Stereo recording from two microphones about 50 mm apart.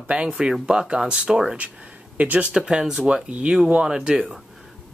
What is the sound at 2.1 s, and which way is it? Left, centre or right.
Speech, right.